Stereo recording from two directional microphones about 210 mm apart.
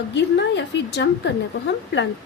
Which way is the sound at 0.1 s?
55° left (ahead or behind).